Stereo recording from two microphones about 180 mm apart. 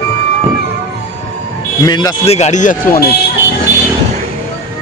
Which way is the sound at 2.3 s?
40° left (ahead or behind).